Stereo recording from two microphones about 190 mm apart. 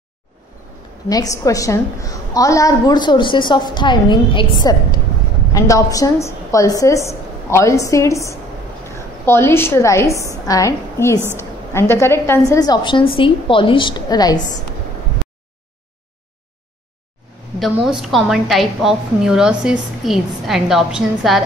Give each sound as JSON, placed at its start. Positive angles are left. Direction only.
{"t": 1.0, "sound": "a woman's voice", "side_deg": 20}
{"t": 17.6, "sound": "a woman's voice", "side_deg": 0}